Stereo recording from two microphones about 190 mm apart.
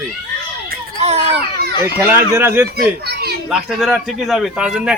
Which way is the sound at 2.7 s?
55° right (ahead or behind).